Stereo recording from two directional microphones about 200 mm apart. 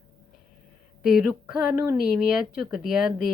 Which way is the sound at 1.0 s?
Centre (ahead or behind).